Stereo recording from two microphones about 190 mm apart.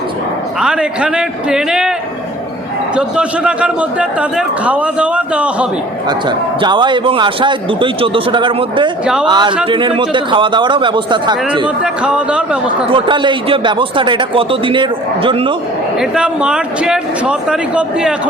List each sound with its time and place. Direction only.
0.6 s speech: 5° right (ahead or behind)
2.9 s a man's voice: 5° right (ahead or behind)
6.1 s a man's voice: 25° right (ahead or behind)
11.8 s speech: 5° right (ahead or behind)
12.9 s a man's voice: 25° right (ahead or behind)
16.0 s speech: 5° right (ahead or behind)